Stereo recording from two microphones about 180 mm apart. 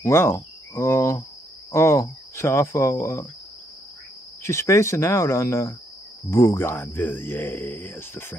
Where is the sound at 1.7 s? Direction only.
15° left (ahead or behind).